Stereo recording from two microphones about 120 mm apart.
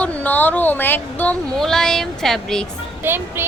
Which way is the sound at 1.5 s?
5° left (ahead or behind).